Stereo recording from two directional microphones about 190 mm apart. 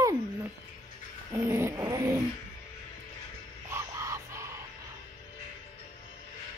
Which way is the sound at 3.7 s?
15° right (ahead or behind).